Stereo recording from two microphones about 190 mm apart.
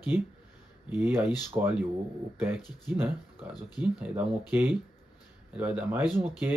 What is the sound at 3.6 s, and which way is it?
Speech, 20° left (ahead or behind).